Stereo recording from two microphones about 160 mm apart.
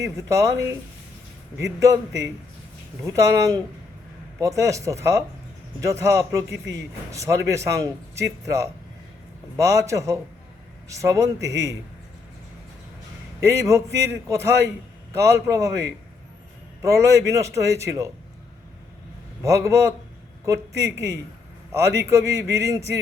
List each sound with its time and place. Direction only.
0.2 s a man's voice: 20° right (ahead or behind)
13.4 s a man's voice: 20° right (ahead or behind)
19.4 s a man's voice: 20° right (ahead or behind)